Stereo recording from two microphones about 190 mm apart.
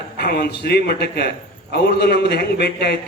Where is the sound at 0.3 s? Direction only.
55° left (ahead or behind).